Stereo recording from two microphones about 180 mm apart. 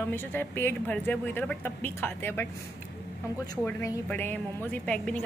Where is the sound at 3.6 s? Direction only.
10° left (ahead or behind).